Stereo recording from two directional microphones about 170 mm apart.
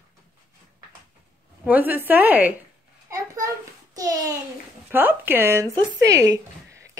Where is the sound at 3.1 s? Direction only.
20° right (ahead or behind).